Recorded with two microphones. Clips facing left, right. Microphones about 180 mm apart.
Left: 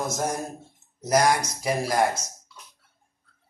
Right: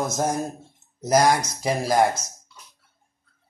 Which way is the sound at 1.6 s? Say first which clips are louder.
Right 3 dB; 25° right (ahead or behind).